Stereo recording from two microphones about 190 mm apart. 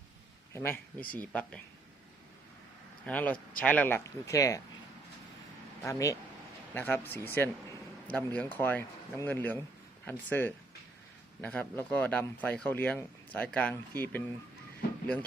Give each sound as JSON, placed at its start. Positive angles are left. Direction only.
{"t": 0.5, "sound": "speech", "side_deg": 10}
{"t": 3.1, "sound": "speech", "side_deg": 10}
{"t": 5.8, "sound": "speech", "side_deg": 15}